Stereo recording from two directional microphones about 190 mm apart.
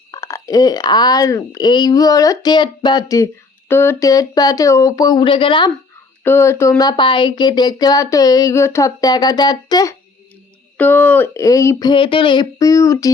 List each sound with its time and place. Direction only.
0.1 s speech: 15° left (ahead or behind)
6.2 s speech: 15° left (ahead or behind)
10.8 s speech: 10° left (ahead or behind)